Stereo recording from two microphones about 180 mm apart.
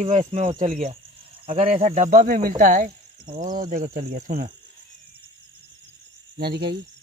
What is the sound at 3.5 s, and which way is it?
Speech, 50° right (ahead or behind).